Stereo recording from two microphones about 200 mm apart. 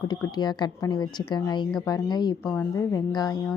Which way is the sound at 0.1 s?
20° left (ahead or behind).